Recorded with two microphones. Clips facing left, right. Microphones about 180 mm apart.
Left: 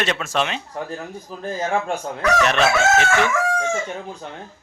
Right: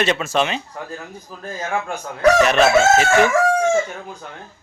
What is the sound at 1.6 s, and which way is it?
Speech, 30° left (ahead or behind).